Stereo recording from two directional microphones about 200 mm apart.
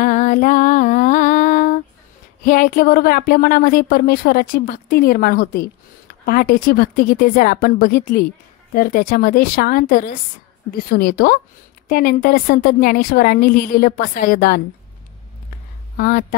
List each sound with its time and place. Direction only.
0.0 s a sound: 40° left (ahead or behind)
2.4 s a woman's voice: 45° left (ahead or behind)
16.0 s a woman's voice: 45° left (ahead or behind)